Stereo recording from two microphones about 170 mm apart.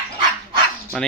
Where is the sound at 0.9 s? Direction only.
Centre (ahead or behind).